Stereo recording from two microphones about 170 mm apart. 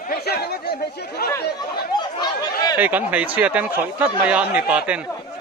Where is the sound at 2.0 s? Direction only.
25° left (ahead or behind).